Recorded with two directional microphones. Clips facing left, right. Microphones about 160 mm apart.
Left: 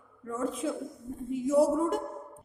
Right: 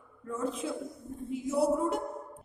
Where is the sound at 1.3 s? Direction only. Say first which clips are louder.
Left 4 dB; 45° left (ahead or behind).